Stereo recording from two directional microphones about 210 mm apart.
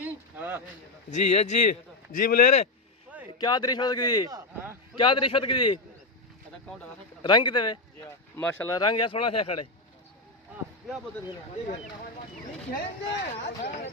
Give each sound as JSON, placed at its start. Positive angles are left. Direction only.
{"t": 0.0, "sound": "a sound", "side_deg": -10}
{"t": 1.1, "sound": "speech", "side_deg": 35}
{"t": 3.3, "sound": "speech", "side_deg": 20}
{"t": 7.2, "sound": "speech", "side_deg": 20}
{"t": 12.7, "sound": "speech", "side_deg": 50}
{"t": 13.3, "sound": "speech", "side_deg": 35}